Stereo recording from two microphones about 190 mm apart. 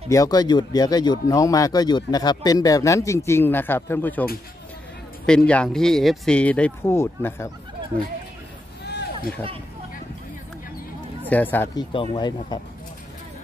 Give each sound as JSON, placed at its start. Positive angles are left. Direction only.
{"t": 0.1, "sound": "speech", "side_deg": 20}
{"t": 8.8, "sound": "a sound", "side_deg": 60}
{"t": 11.2, "sound": "speech", "side_deg": 10}
{"t": 11.7, "sound": "speech", "side_deg": 30}